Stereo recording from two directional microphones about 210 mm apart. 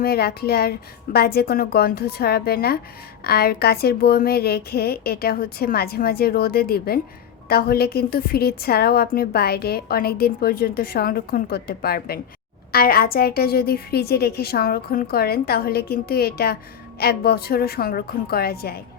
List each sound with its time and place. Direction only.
0.0 s a woman's voice: 50° left (ahead or behind)